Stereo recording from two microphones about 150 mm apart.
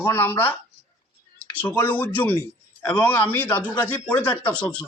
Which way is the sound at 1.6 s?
15° left (ahead or behind).